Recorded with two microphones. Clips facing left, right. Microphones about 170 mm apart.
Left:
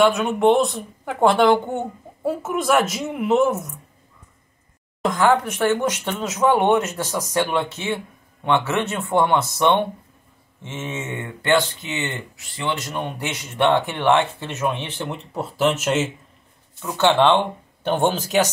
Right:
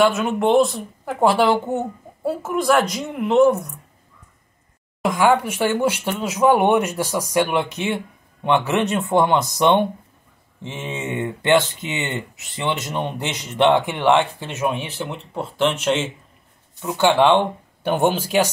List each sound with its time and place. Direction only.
0.0 s speech: centre (ahead or behind)
5.0 s speech: 10° right (ahead or behind)
16.8 s speech: 10° right (ahead or behind)